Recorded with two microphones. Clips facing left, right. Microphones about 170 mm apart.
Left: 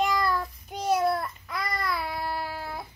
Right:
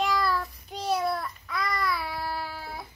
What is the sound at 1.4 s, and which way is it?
Babbling, 20° left (ahead or behind).